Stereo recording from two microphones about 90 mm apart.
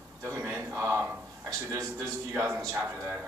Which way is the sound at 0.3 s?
25° right (ahead or behind).